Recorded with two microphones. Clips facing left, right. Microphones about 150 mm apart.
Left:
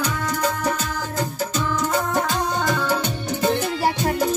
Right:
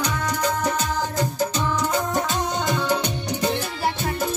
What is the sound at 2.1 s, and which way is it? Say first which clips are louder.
Music: left 2 dB; 20° right (ahead or behind).